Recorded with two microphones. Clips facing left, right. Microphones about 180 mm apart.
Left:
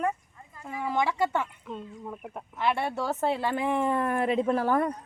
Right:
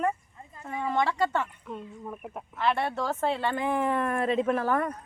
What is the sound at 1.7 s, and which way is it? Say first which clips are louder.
Speech: even; centre (ahead or behind).